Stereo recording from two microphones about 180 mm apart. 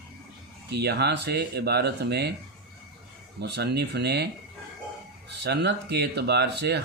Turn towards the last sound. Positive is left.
turn(degrees=-70)  # may be behind; listen again after turning